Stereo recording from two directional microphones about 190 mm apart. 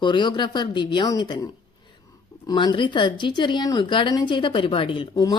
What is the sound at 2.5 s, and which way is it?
Speech, 25° left (ahead or behind).